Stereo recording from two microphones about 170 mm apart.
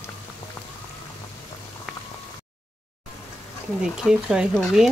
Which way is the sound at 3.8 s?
5° right (ahead or behind).